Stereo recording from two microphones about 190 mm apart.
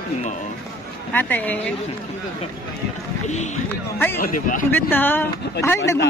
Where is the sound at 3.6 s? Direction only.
10° left (ahead or behind).